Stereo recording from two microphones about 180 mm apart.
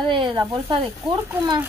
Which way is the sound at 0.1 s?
25° right (ahead or behind).